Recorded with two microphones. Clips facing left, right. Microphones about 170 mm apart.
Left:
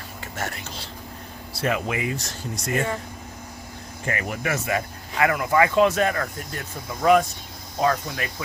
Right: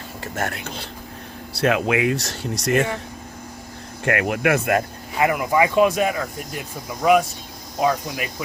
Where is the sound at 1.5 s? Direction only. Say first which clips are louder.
Right 6 dB; 80° right.